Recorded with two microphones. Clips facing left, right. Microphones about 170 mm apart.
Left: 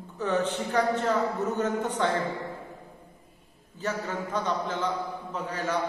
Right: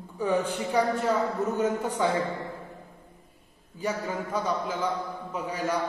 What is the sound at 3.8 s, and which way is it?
A man's voice, 10° right (ahead or behind).